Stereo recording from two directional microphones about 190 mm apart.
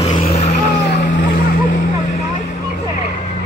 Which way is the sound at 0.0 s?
35° left (ahead or behind).